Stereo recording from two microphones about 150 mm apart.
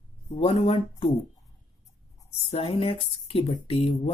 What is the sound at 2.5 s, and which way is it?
Speech, 40° left (ahead or behind).